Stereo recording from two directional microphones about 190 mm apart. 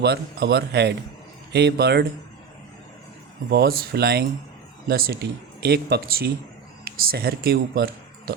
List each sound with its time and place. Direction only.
0.0 s speech: 55° right (ahead or behind)
3.5 s speech: 55° right (ahead or behind)